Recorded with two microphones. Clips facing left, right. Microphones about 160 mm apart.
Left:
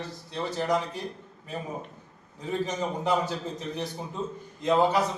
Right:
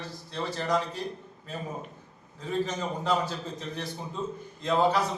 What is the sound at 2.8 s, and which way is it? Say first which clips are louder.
A man's voice: left 2 dB; 15° left (ahead or behind).